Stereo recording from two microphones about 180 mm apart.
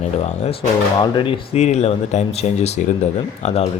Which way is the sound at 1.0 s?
30° left (ahead or behind).